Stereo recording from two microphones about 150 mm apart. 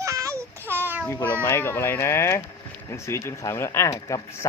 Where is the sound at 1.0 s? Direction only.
15° left (ahead or behind).